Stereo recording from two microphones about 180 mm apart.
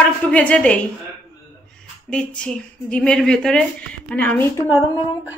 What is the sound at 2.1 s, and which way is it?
Speech, 5° left (ahead or behind).